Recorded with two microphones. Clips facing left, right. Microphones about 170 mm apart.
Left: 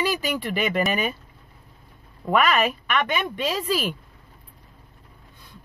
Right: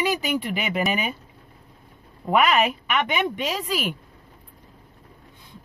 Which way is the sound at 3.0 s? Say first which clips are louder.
Right 1 dB; 20° right (ahead or behind).